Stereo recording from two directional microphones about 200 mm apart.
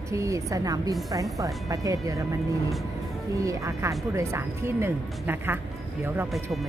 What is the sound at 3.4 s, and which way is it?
Speech, 15° right (ahead or behind).